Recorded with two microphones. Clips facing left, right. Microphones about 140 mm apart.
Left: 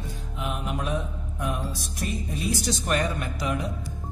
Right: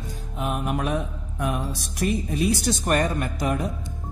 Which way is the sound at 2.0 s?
60° right (ahead or behind).